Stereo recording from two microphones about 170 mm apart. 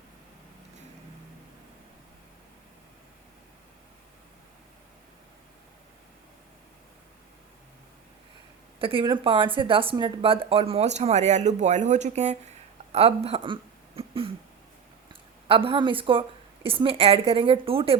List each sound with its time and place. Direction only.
8.8 s speech: 30° right (ahead or behind)
12.9 s throat clearing: 35° right (ahead or behind)
15.1 s speech: 30° right (ahead or behind)